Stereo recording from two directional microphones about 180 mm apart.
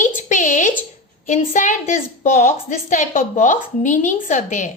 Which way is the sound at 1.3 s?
45° left (ahead or behind).